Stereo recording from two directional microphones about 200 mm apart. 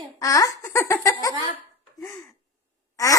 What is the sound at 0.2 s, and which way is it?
Speech, 15° left (ahead or behind).